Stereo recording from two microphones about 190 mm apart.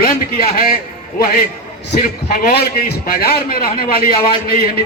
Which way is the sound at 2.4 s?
55° left (ahead or behind).